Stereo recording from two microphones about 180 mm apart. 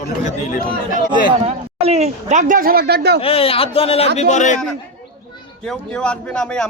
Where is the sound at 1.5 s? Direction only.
35° right (ahead or behind); by 3.2 s 65° right (ahead or behind).